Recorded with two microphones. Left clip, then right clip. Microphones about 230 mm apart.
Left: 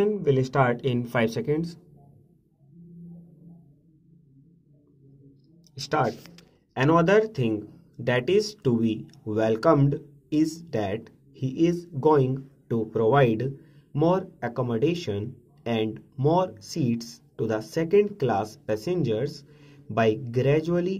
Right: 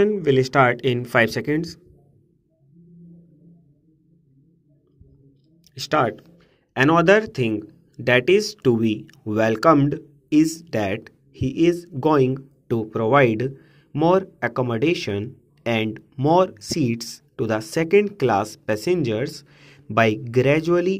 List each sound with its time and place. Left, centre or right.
0.0 s speech: right
5.8 s speech: right